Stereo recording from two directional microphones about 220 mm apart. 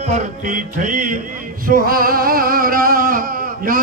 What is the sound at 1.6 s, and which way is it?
Singing, 40° right (ahead or behind).